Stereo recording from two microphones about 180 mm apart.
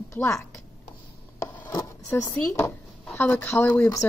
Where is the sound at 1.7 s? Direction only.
20° left (ahead or behind).